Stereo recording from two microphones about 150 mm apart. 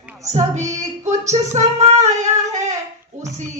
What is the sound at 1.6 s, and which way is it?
Female singing, 50° right (ahead or behind).